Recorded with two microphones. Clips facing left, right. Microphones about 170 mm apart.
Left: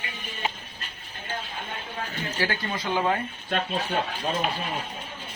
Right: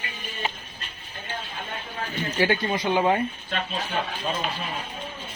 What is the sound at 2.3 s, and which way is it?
Speech, 20° right (ahead or behind).